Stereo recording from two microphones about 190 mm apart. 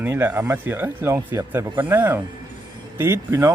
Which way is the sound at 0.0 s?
10° right (ahead or behind).